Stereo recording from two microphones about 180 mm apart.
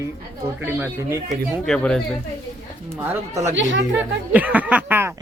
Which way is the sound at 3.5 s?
90° right.